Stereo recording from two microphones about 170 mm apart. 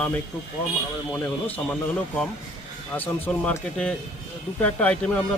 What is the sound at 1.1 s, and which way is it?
Speech, 10° left (ahead or behind).